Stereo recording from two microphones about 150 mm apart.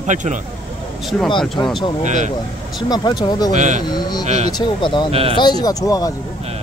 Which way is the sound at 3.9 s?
25° left (ahead or behind).